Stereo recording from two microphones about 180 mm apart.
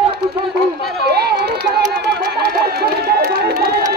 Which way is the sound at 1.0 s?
65° right (ahead or behind).